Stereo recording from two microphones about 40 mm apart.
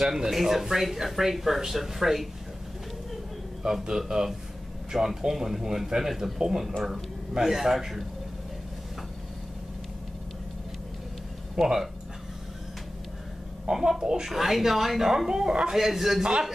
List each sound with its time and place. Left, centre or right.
0.0 s speech: centre
3.6 s speech: centre
11.5 s speech: centre
13.7 s speech: centre
15.7 s speech: centre